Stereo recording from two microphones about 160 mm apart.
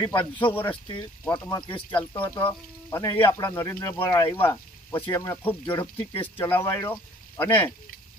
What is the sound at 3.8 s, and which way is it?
Speech, 25° left (ahead or behind).